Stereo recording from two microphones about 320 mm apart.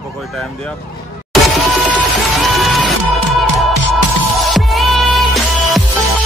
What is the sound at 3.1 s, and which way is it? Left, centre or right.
Music, right.